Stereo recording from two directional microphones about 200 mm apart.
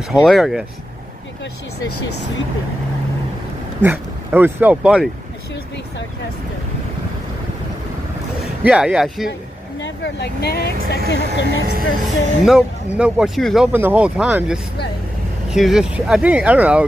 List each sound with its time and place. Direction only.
0.1 s speech: centre (ahead or behind)
3.8 s speech: 10° right (ahead or behind)
8.6 s speech: 5° right (ahead or behind)
9.8 s speech: 65° left (ahead or behind)
11.4 s speech: 45° right (ahead or behind)
12.4 s speech: 5° right (ahead or behind)
13.7 s speech: 10° right (ahead or behind)